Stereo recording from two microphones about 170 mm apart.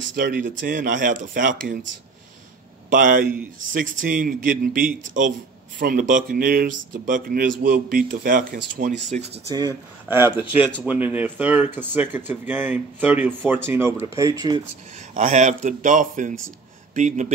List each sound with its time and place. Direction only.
0.1 s speech: 55° right (ahead or behind)
2.9 s speech: 55° right (ahead or behind)
9.5 s speech: 25° right (ahead or behind)
10.0 s speech: 15° right (ahead or behind)
15.1 s speech: 45° right (ahead or behind)